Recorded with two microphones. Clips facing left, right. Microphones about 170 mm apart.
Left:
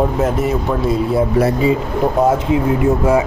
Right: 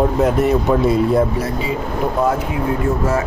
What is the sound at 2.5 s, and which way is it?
Speech, 15° left (ahead or behind).